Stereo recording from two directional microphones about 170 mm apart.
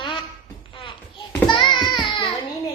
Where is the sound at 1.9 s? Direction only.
25° left (ahead or behind).